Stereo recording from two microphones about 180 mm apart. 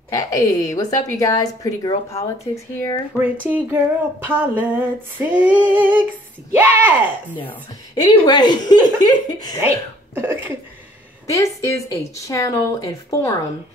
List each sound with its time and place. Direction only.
0.1 s a woman's voice: 20° left (ahead or behind)
3.2 s female singing: 10° right (ahead or behind)
7.9 s a woman's voice: 25° left (ahead or behind)
10.1 s female singing: 10° right (ahead or behind)
11.2 s speech: 15° left (ahead or behind)